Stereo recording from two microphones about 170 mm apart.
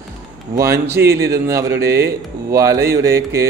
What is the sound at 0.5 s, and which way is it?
Speech, 15° right (ahead or behind).